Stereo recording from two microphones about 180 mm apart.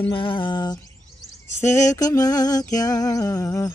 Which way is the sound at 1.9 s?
20° left (ahead or behind).